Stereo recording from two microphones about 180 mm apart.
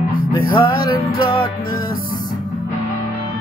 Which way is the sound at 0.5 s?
25° left (ahead or behind).